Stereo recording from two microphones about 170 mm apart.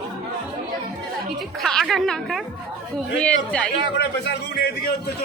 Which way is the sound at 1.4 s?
Centre (ahead or behind).